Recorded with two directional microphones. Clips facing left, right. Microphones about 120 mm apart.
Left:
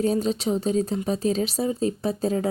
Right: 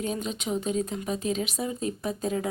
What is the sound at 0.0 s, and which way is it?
Speech, 35° left (ahead or behind).